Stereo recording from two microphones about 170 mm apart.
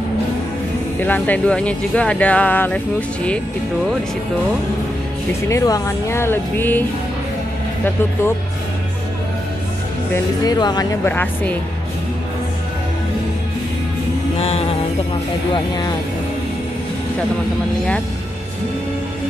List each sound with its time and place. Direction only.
0.9 s speech: 10° left (ahead or behind)
5.5 s speech: 20° left (ahead or behind)
10.1 s speech: 20° left (ahead or behind)
11.1 s speech: 10° left (ahead or behind)
14.4 s music: 35° left (ahead or behind)